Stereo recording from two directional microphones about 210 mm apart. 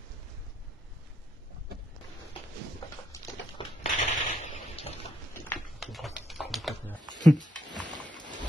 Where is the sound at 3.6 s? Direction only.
30° left (ahead or behind).